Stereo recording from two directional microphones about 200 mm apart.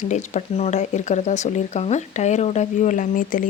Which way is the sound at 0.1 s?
35° left (ahead or behind).